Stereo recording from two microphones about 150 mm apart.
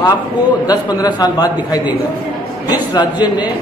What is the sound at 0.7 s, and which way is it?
Speech, 25° left (ahead or behind).